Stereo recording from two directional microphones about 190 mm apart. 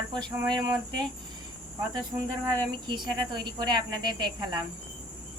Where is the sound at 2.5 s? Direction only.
25° right (ahead or behind).